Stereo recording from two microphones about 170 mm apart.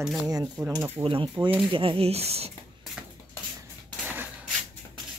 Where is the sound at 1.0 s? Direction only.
30° right (ahead or behind).